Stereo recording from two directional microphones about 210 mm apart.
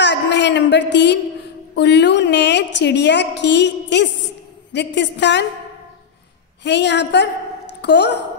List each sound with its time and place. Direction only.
0.0 s a sound: 55° left (ahead or behind)
0.9 s a woman's voice: 55° left (ahead or behind)
6.6 s a woman's voice: 55° left (ahead or behind)